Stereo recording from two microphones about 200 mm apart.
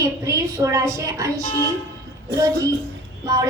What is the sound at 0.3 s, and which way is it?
A woman's voice, 15° right (ahead or behind).